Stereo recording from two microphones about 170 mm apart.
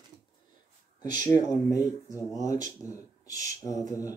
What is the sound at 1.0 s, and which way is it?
Speech, 25° left (ahead or behind).